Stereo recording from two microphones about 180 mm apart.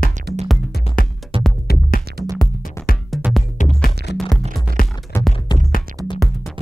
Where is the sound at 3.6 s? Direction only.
40° left (ahead or behind).